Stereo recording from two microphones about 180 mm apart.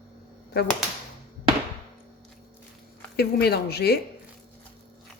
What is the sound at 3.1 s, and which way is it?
Speech, 60° left (ahead or behind).